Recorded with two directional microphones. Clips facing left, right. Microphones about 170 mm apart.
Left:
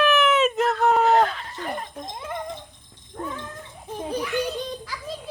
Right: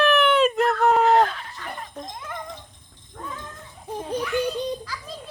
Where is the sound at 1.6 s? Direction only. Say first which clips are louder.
Left 5 dB; 35° left (ahead or behind).